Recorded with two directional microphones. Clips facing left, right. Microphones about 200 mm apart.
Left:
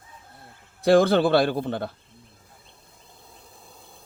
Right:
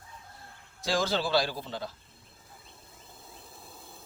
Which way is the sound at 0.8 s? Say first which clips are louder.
Left 12 dB; 60° left (ahead or behind).